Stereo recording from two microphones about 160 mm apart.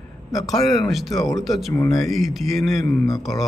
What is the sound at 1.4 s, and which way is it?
Speech, centre (ahead or behind).